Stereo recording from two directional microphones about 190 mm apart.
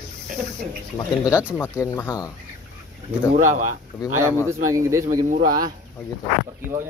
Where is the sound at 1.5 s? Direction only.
15° left (ahead or behind).